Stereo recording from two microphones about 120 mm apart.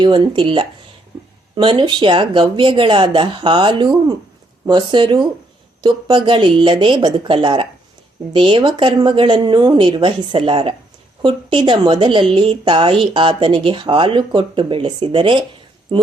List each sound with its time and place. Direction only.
0.0 s a woman's voice: 45° right (ahead or behind)